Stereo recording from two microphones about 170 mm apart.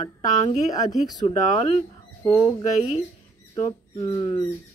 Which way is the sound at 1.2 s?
40° left (ahead or behind).